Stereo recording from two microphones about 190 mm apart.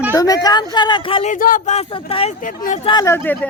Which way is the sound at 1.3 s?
45° left (ahead or behind).